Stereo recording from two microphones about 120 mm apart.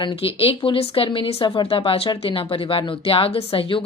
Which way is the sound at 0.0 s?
45° left (ahead or behind).